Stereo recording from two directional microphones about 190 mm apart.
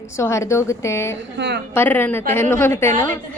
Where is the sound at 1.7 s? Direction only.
10° left (ahead or behind).